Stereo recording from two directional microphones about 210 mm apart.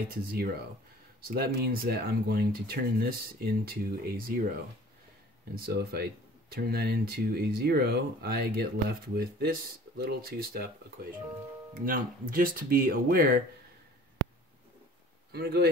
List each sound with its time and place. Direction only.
0.1 s speech: 45° right (ahead or behind)
5.5 s speech: 45° right (ahead or behind)
15.3 s speech: 50° right (ahead or behind)